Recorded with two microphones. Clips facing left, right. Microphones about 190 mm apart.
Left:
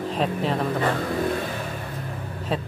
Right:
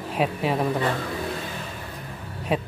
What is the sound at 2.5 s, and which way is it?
Speech, 15° right (ahead or behind).